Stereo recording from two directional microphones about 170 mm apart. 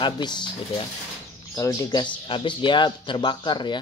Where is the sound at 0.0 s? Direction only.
25° left (ahead or behind).